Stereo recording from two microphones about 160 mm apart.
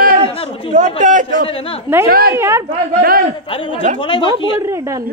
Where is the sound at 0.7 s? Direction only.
50° right (ahead or behind).